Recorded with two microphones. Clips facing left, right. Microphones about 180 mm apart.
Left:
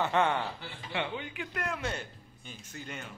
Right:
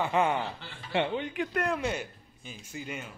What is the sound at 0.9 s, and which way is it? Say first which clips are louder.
Speech: right 7 dB; 45° right (ahead or behind).